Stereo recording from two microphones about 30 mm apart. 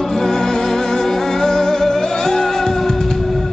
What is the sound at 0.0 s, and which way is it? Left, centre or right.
Music, centre.